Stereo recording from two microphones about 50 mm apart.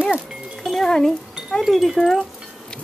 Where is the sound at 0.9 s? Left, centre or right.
Centre.